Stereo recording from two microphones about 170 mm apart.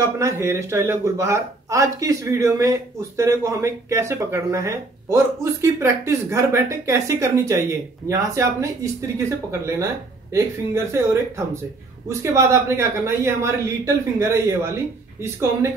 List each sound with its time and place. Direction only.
0.0 s speech: 20° right (ahead or behind)